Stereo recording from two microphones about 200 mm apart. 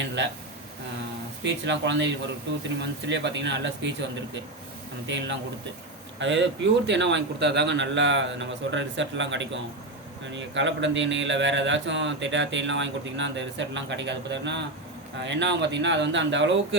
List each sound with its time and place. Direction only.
0.2 s a man's voice: 65° right (ahead or behind)
1.5 s a man's voice: 60° right (ahead or behind)
3.1 s a man's voice: 60° right (ahead or behind)